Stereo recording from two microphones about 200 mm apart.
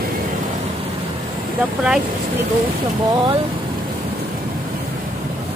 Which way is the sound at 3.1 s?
20° right (ahead or behind).